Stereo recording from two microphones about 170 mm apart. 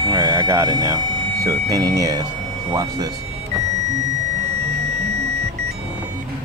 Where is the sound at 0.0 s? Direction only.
25° right (ahead or behind).